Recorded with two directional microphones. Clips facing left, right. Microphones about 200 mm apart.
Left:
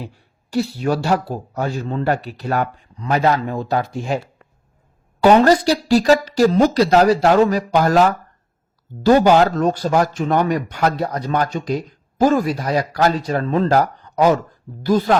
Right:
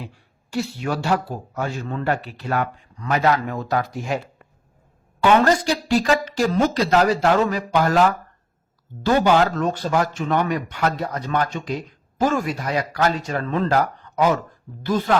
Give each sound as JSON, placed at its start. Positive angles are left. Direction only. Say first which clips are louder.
{"t": 0.5, "sound": "speech", "louder": "left 5 dB", "side_deg": 35}
{"t": 5.2, "sound": "speech", "louder": "left 5 dB", "side_deg": 35}
{"t": 9.0, "sound": "speech", "louder": "left 5 dB", "side_deg": 40}